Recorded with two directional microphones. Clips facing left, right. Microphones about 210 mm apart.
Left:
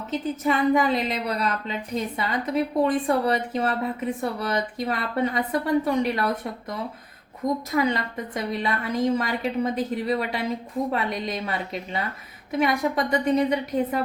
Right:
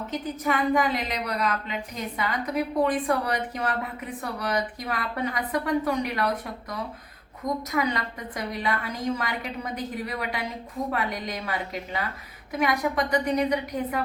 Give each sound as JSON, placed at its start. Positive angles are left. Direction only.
{"t": 0.4, "sound": "a woman's voice", "side_deg": 25}